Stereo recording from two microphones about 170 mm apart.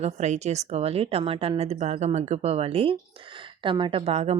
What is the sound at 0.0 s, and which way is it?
A woman's voice, 40° right (ahead or behind).